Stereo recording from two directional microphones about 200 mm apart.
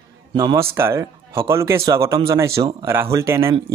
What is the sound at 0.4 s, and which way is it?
A man's voice, 20° right (ahead or behind).